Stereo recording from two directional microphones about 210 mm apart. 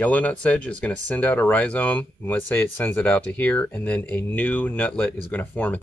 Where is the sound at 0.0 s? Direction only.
5° left (ahead or behind).